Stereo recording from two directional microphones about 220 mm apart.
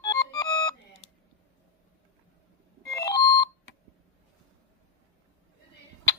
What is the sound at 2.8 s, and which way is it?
Alarm clock, 15° left (ahead or behind).